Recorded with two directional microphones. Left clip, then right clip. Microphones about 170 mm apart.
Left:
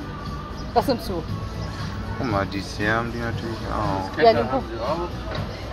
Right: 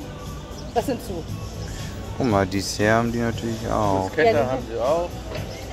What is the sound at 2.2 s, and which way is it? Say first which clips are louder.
Speech: right 4 dB; 75° right (ahead or behind).